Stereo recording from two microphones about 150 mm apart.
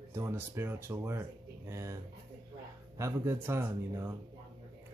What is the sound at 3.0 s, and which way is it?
Speech, 15° right (ahead or behind).